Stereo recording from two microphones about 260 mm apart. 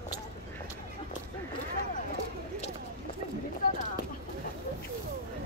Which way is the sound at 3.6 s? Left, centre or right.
Left.